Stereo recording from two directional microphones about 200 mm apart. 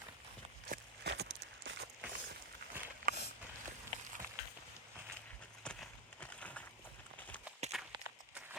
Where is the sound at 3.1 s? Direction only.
45° right (ahead or behind).